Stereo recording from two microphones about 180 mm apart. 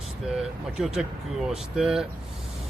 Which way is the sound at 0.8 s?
Centre (ahead or behind).